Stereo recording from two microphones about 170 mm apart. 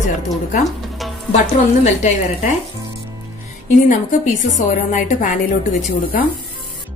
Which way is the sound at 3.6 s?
45° left (ahead or behind).